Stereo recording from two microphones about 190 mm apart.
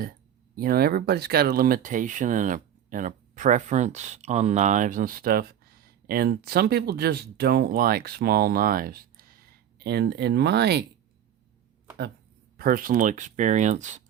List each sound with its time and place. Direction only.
0.5 s speech: 50° right (ahead or behind)
12.5 s speech: 50° right (ahead or behind)